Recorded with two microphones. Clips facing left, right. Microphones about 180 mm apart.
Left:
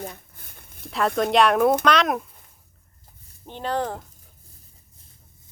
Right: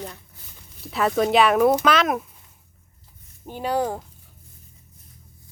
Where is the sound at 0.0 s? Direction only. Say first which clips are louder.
Left 1 dB; 55° left (ahead or behind).